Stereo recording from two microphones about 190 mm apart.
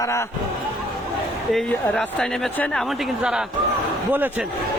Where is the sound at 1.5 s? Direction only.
Centre (ahead or behind).